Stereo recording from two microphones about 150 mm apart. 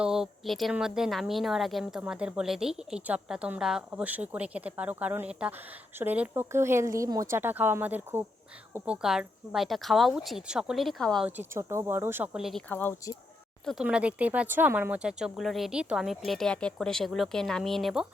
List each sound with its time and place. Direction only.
0.0 s a woman's voice: 5° right (ahead or behind)
11.3 s speech: 15° right (ahead or behind)
12.6 s speech: 15° left (ahead or behind)
13.8 s a woman's voice: 10° right (ahead or behind)